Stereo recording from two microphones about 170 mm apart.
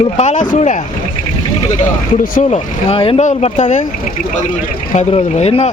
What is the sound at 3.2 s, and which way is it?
Speech, 45° left (ahead or behind).